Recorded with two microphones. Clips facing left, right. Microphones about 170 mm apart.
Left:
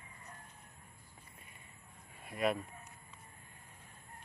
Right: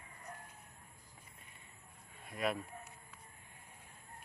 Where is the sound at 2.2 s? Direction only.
Centre (ahead or behind).